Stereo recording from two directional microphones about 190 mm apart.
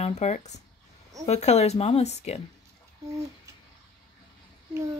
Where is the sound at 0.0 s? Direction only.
35° left (ahead or behind).